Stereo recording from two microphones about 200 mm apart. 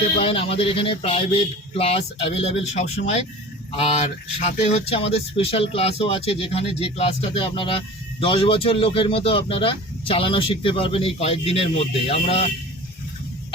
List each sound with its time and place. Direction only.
0.2 s speech: 30° left (ahead or behind)